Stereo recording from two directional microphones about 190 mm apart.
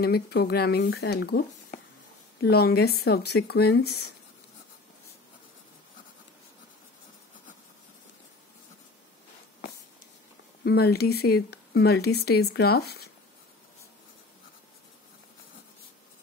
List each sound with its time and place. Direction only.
0.0 s speech: 55° left (ahead or behind)
2.4 s speech: 55° left (ahead or behind)
10.6 s speech: 55° left (ahead or behind)